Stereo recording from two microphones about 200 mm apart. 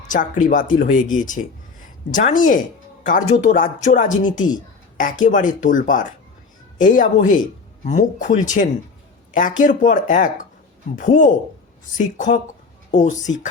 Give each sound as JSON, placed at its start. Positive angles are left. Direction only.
{"t": 0.1, "sound": "speech", "side_deg": 40}
{"t": 2.1, "sound": "speech", "side_deg": 40}